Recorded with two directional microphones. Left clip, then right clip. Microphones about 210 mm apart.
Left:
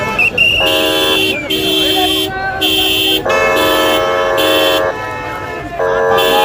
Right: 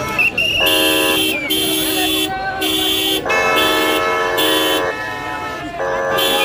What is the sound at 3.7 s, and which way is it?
Vehicle, 45° left (ahead or behind).